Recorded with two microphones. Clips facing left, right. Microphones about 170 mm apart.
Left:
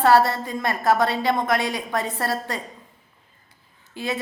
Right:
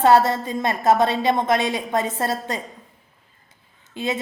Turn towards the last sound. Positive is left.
turn(degrees=-20)  # may be behind; listen again after turning